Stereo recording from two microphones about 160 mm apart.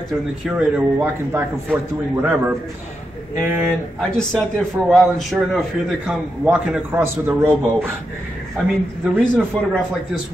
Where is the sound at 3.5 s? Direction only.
15° right (ahead or behind).